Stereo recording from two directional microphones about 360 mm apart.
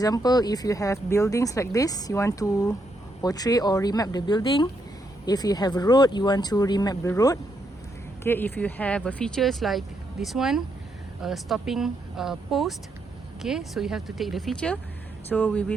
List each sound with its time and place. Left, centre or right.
0.0 s speech: centre